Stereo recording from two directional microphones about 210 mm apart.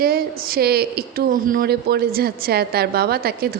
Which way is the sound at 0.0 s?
45° right (ahead or behind).